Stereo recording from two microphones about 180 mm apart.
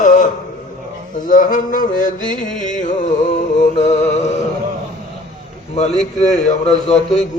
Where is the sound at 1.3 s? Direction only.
45° left (ahead or behind).